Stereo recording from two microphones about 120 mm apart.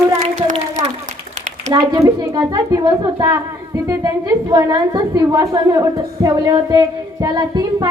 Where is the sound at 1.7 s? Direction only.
35° right (ahead or behind).